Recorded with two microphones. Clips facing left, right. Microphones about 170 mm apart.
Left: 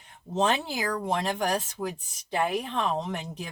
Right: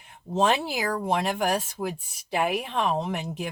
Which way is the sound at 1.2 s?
15° right (ahead or behind).